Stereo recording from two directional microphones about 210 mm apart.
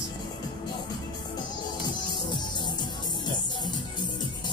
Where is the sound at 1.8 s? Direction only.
20° left (ahead or behind).